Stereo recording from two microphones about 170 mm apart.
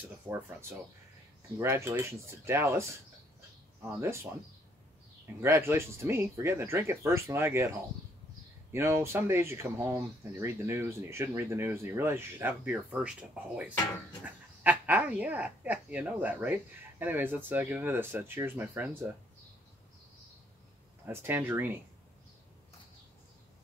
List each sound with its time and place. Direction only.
0.3 s speech: 15° right (ahead or behind)
4.0 s speech: 15° right (ahead or behind)
5.4 s speech: 15° right (ahead or behind)
8.7 s speech: 15° right (ahead or behind)
21.0 s speech: 10° right (ahead or behind)